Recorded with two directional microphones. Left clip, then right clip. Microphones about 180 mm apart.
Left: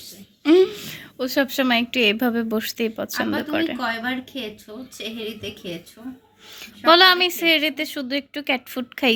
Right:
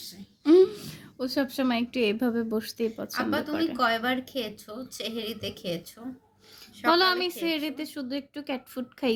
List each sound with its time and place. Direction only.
0.4 s a woman's voice: centre (ahead or behind)
3.8 s a woman's voice: 25° right (ahead or behind)
6.6 s a woman's voice: 5° left (ahead or behind)